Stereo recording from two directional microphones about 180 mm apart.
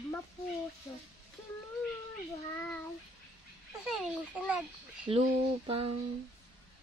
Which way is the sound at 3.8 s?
5° right (ahead or behind).